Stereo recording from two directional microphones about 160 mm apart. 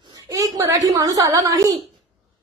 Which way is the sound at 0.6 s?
20° right (ahead or behind).